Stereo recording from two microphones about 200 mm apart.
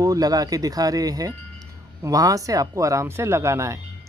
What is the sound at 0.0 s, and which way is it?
Speech, 20° right (ahead or behind).